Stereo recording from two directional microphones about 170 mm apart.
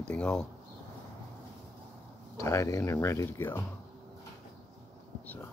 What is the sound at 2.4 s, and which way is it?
Speech, 15° left (ahead or behind).